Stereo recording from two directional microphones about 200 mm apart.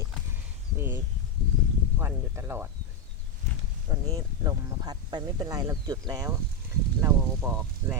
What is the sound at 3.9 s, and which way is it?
Speech, 20° right (ahead or behind).